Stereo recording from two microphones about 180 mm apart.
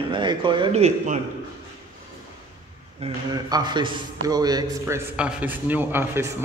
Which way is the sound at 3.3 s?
25° right (ahead or behind).